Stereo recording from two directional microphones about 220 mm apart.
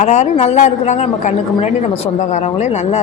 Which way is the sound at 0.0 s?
30° left (ahead or behind).